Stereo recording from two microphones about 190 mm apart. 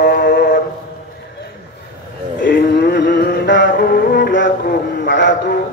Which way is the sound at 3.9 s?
55° left (ahead or behind).